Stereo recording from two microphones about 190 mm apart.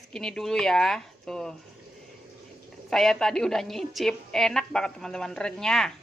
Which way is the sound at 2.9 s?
Centre (ahead or behind).